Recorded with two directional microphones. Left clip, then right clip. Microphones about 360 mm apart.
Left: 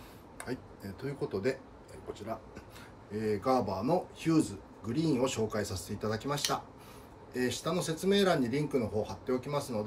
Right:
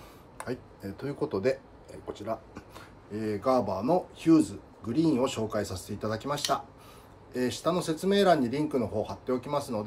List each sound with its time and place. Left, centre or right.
0.4 s speech: centre